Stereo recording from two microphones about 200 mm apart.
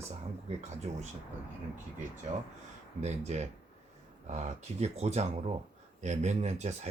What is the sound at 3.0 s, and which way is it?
Speech, 35° right (ahead or behind).